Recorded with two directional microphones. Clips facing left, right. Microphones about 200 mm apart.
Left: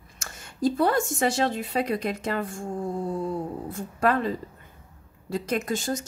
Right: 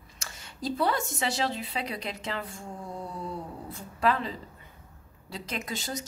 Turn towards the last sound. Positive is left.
turn(degrees=50)  # may be behind; listen again after turning